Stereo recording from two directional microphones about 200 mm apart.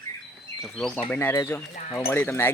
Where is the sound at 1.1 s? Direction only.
15° left (ahead or behind).